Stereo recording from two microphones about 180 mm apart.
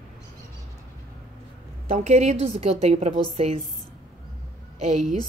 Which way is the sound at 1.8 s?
40° right (ahead or behind).